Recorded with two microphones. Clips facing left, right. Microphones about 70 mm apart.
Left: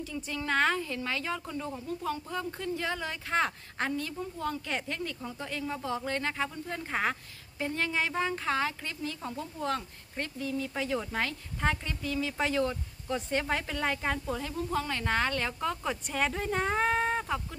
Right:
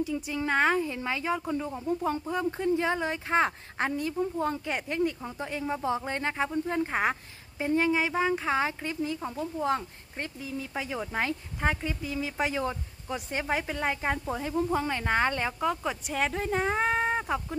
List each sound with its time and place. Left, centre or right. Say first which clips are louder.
0.0 s speech: right 6 dB; centre
15.6 s speech: right 3 dB; centre